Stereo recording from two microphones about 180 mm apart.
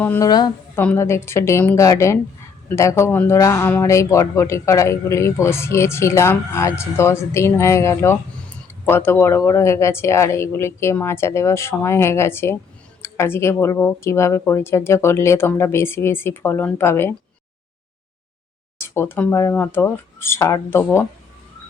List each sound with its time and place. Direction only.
0.0 s speech: 10° left (ahead or behind)
0.3 s a woman's voice: 20° left (ahead or behind)
0.8 s speech: 10° left (ahead or behind)
18.9 s speech: 10° left (ahead or behind)